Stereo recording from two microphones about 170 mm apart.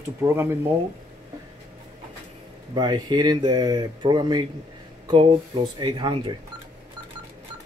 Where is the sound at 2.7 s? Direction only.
25° right (ahead or behind).